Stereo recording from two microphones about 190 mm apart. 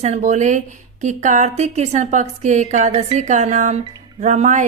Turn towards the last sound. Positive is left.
turn(degrees=-40)  # may be behind; listen again after turning